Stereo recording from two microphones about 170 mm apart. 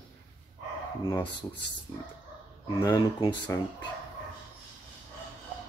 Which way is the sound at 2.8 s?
20° left (ahead or behind).